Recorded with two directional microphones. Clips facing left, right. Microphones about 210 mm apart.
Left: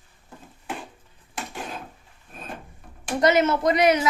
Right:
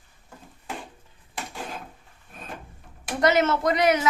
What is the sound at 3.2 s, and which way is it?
Speech, 20° left (ahead or behind).